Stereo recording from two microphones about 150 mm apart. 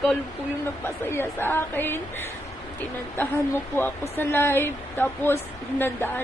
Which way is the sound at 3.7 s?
15° left (ahead or behind).